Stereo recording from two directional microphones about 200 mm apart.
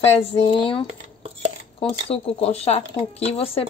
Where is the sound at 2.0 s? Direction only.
30° left (ahead or behind).